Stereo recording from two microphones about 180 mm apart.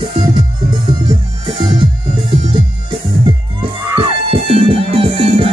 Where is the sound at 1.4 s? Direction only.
30° right (ahead or behind).